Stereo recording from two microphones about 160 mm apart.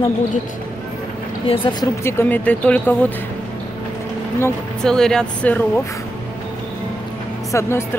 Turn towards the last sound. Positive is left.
turn(degrees=15)  # may be behind; listen again after turning